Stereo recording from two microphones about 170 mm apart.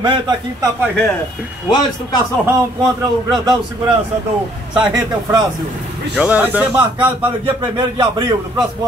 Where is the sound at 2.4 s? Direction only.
20° right (ahead or behind).